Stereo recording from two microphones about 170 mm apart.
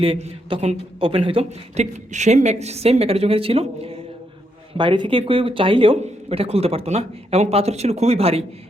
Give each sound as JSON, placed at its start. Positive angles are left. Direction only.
{"t": 0.0, "sound": "a man's voice", "side_deg": -35}